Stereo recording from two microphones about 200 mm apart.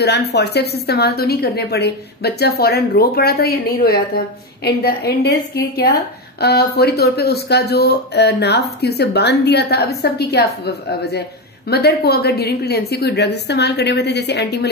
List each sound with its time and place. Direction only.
0.0 s a woman's voice: 55° left (ahead or behind)